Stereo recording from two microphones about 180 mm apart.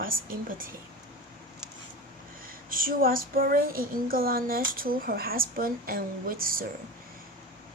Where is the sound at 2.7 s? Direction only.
50° right (ahead or behind).